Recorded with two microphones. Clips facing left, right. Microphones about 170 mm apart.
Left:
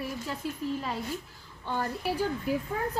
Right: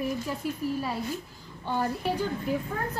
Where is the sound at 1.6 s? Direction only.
15° right (ahead or behind).